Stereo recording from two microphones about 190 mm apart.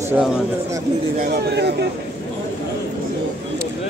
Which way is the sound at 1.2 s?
60° right (ahead or behind).